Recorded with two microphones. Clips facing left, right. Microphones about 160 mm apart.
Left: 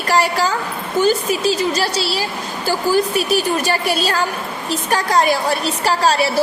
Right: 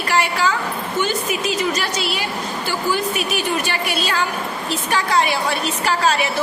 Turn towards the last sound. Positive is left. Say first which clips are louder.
# left 3 dB
turn(degrees=35)  # may be behind; listen again after turning